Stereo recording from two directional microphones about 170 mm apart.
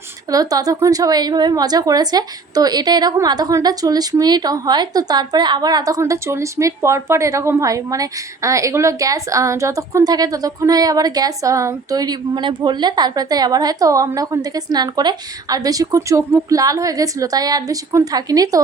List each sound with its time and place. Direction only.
0.3 s a woman's voice: 20° right (ahead or behind)